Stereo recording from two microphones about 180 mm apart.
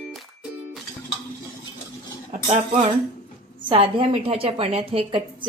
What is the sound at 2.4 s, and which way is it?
Cutlery, 30° right (ahead or behind).